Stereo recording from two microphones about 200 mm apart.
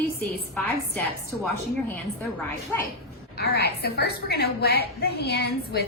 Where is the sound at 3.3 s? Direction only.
55° left (ahead or behind).